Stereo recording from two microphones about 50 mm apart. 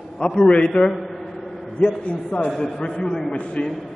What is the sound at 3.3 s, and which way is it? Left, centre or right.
Speech, left.